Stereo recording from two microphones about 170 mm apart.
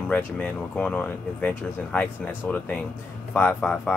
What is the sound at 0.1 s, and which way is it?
Speech, 5° left (ahead or behind).